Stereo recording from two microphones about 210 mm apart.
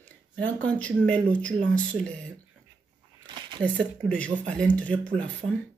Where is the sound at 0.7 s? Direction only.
5° left (ahead or behind).